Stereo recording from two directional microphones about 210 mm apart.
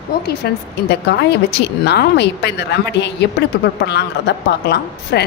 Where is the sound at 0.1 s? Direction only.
50° left (ahead or behind).